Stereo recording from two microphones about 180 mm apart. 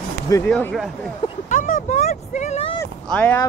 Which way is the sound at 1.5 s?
45° left (ahead or behind).